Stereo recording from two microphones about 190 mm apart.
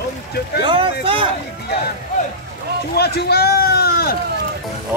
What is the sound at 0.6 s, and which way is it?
Speech, 25° right (ahead or behind).